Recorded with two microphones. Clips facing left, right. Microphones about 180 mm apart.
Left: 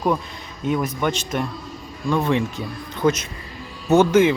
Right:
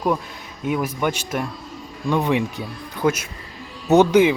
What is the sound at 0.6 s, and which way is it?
Speech, 10° right (ahead or behind).